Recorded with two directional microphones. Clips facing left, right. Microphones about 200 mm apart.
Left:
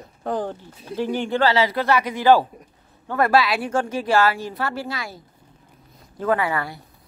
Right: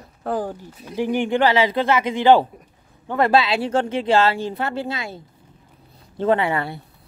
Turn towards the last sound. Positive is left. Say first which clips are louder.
# right 3 dB
turn(degrees=-25)  # may be behind; listen again after turning